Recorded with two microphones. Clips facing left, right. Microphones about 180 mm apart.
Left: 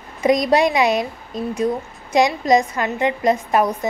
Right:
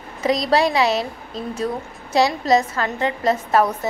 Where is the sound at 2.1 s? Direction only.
15° left (ahead or behind).